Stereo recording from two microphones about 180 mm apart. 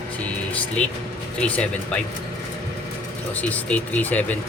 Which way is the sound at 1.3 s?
5° left (ahead or behind).